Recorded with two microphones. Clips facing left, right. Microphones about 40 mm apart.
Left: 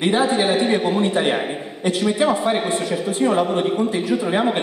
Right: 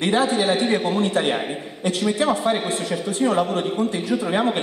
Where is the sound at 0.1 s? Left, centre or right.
Left.